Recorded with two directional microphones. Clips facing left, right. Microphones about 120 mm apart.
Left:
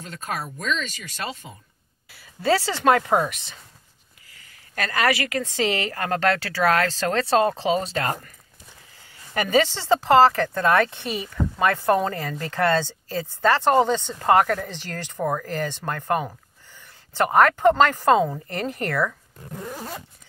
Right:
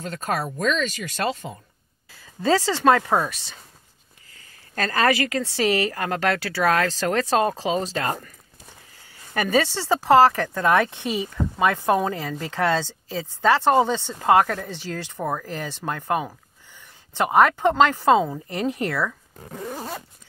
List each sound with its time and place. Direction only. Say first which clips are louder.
0.0 s speech: right 5 dB; 40° right (ahead or behind)
2.6 s speech: right 1 dB; 15° left (ahead or behind)
4.4 s a woman's voice: right 2 dB; 35° right (ahead or behind)
5.4 s speech: right 2 dB; 20° left (ahead or behind)
6.4 s speech: even; 15° right (ahead or behind)
7.5 s speech: left 2 dB; 25° left (ahead or behind)
9.3 s speech: left 1 dB; 15° left (ahead or behind)
9.8 s speech: right 1 dB; 10° right (ahead or behind)